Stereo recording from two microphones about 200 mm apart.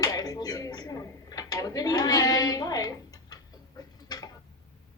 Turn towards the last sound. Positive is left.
turn(degrees=20)  # may be behind; listen again after turning